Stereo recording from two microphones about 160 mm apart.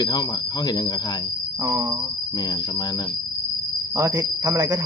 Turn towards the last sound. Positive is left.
turn(degrees=-20)  # may be behind; listen again after turning